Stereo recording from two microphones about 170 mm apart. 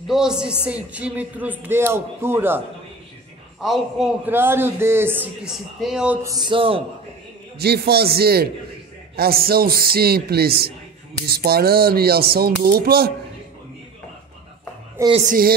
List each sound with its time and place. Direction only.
0.1 s speech: 5° right (ahead or behind)
3.6 s a man's voice: centre (ahead or behind)
4.3 s speech: 15° right (ahead or behind)
6.2 s speech: 25° right (ahead or behind)
7.5 s a man's voice: 70° right (ahead or behind)
15.2 s speech: 55° right (ahead or behind)